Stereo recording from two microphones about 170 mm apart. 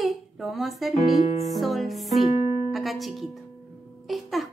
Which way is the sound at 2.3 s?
40° left (ahead or behind).